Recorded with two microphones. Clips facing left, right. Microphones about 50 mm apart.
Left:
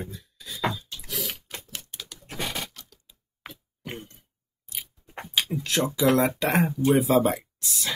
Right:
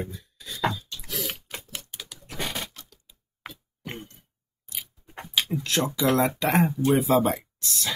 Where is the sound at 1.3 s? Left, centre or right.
Centre.